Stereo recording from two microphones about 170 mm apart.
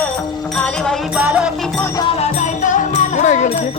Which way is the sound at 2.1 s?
45° left (ahead or behind).